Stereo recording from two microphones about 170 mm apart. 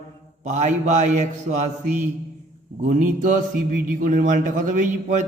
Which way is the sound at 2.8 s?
45° right (ahead or behind).